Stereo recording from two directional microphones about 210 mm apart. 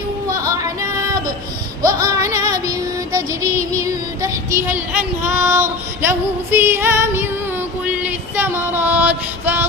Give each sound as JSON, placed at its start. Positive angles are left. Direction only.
{"t": 0.3, "sound": "female singing", "side_deg": -15}
{"t": 2.0, "sound": "female singing", "side_deg": -15}
{"t": 3.1, "sound": "child singing", "side_deg": -15}
{"t": 4.5, "sound": "speech", "side_deg": -35}
{"t": 5.3, "sound": "female singing", "side_deg": -10}
{"t": 7.9, "sound": "music", "side_deg": -10}